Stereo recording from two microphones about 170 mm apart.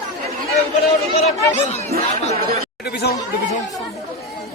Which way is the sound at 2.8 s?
70° left (ahead or behind).